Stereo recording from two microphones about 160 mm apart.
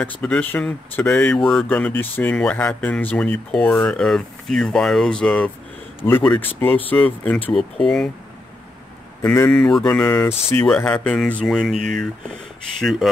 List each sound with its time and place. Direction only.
0.0 s speech: 10° left (ahead or behind)
9.2 s speech: 15° left (ahead or behind)
9.6 s mantra: 5° left (ahead or behind)
10.0 s speech: 15° left (ahead or behind)
13.0 s speech: centre (ahead or behind)